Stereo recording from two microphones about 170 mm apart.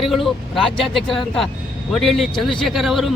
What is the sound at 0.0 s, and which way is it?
A man's voice, centre (ahead or behind).